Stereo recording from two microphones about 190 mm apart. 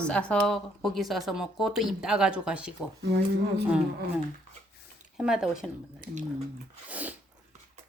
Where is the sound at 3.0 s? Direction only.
65° right (ahead or behind).